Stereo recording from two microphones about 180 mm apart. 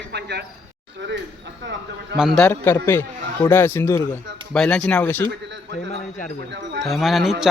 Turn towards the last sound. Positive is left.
turn(degrees=0)  # may be behind; listen again after turning